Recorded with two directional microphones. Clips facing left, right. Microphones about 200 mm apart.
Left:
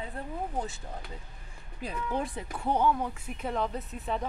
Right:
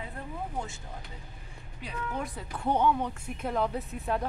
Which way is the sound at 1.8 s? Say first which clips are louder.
Left 3 dB; 30° left (ahead or behind).